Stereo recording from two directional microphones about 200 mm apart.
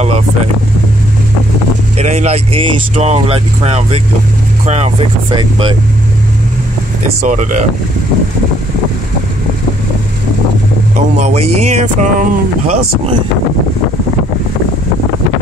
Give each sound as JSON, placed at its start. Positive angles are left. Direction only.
{"t": 2.0, "sound": "speech", "side_deg": -35}
{"t": 7.2, "sound": "speech", "side_deg": -40}
{"t": 11.1, "sound": "speech", "side_deg": -35}